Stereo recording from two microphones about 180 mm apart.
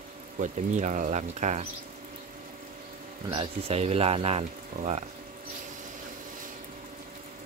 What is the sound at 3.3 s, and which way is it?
Speech, 30° right (ahead or behind).